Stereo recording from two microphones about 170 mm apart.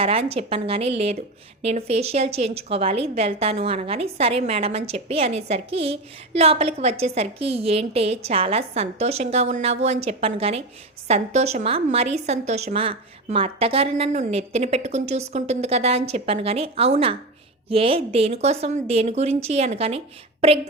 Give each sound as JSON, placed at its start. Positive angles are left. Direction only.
{"t": 0.0, "sound": "a woman's voice", "side_deg": -35}